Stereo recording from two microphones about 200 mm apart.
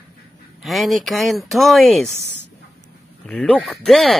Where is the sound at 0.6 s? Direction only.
Centre (ahead or behind).